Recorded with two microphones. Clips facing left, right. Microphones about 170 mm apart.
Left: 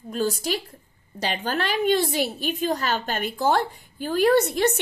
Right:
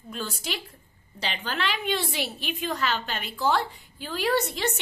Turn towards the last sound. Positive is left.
turn(degrees=50)  # may be behind; listen again after turning